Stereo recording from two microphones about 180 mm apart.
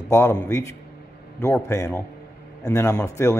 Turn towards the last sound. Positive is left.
turn(degrees=15)  # may be behind; listen again after turning